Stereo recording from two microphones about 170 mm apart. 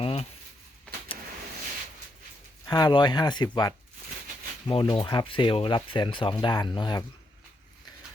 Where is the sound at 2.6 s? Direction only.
25° left (ahead or behind).